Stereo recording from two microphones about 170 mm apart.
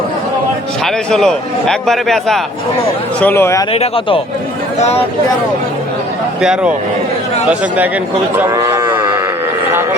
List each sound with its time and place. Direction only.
1.1 s a man's voice: 5° left (ahead or behind)
3.7 s speech: 35° left (ahead or behind)
6.4 s a man's voice: 5° right (ahead or behind)
8.4 s cattle: 20° right (ahead or behind)